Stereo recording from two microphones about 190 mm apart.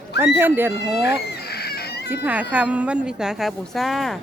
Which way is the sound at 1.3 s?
55° left (ahead or behind).